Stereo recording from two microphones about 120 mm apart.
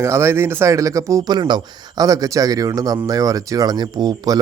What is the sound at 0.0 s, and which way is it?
Speech, 20° right (ahead or behind).